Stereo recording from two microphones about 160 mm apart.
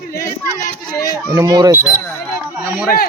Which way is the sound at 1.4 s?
25° right (ahead or behind).